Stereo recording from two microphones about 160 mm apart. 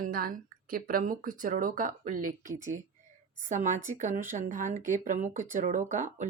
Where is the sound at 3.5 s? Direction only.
50° right (ahead or behind).